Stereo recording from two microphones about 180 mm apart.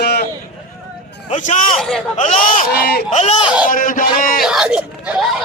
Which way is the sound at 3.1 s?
35° left (ahead or behind).